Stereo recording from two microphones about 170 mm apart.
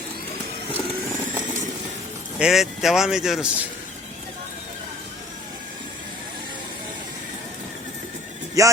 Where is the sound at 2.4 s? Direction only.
Centre (ahead or behind).